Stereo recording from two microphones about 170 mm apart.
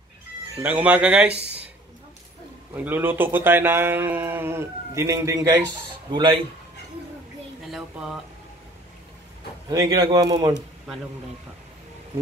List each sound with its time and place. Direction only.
0.6 s speech: 10° right (ahead or behind)
2.7 s speech: 10° right (ahead or behind)
6.1 s speech: 30° right (ahead or behind)
7.6 s speech: 5° right (ahead or behind)
9.7 s speech: 25° right (ahead or behind)